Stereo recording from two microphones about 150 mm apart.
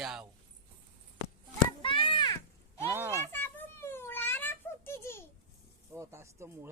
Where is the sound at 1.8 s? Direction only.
35° left (ahead or behind).